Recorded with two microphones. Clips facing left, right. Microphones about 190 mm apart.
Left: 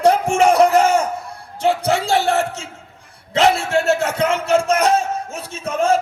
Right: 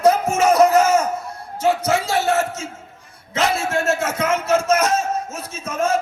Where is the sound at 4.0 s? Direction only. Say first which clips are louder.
Left 2 dB; 35° left (ahead or behind).